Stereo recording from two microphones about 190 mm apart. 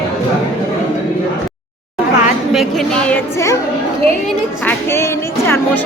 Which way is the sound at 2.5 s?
Centre (ahead or behind).